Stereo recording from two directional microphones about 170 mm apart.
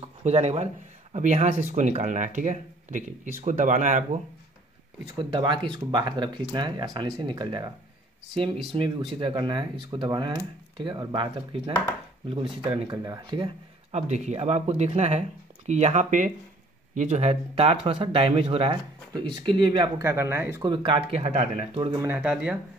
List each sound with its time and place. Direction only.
0.2 s speech: 40° right (ahead or behind)
5.1 s speech: 30° right (ahead or behind)
8.7 s speech: 30° right (ahead or behind)
12.9 s speech: 20° right (ahead or behind)
13.9 s speech: 40° right (ahead or behind); by 20.6 s 15° right (ahead or behind)
20.6 s speech: 30° right (ahead or behind)
22.0 s speech: 5° right (ahead or behind)